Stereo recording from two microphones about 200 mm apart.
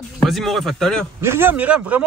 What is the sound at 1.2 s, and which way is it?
Speech, 10° right (ahead or behind).